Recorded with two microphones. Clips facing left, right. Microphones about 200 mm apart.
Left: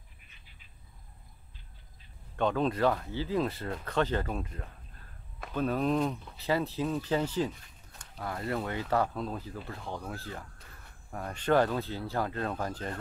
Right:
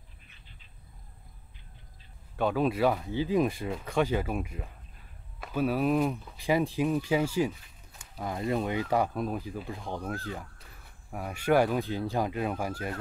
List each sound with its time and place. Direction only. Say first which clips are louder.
2.3 s speech: right 1 dB; 5° right (ahead or behind)